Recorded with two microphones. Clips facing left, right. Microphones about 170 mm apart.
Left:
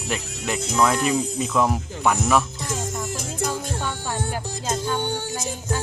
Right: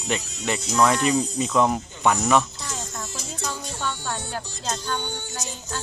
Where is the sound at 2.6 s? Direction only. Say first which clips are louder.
Left 6 dB; 50° left (ahead or behind).